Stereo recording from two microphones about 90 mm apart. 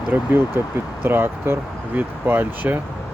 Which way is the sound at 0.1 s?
25° right (ahead or behind).